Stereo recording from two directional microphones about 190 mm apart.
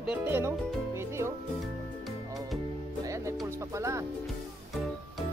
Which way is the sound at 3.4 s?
15° right (ahead or behind).